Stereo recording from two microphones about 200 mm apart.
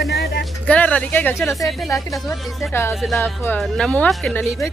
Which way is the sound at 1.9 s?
15° left (ahead or behind).